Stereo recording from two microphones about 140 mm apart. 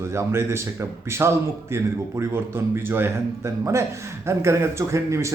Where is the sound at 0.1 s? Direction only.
20° right (ahead or behind).